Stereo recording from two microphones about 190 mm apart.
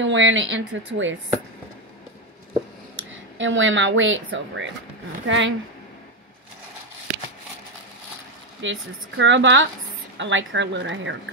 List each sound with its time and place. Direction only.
0.0 s a woman's voice: 80° right
3.3 s a woman's voice: 85° right
8.5 s speech: 75° right (ahead or behind)